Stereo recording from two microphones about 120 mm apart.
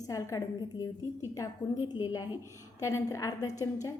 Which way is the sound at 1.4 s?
30° left (ahead or behind).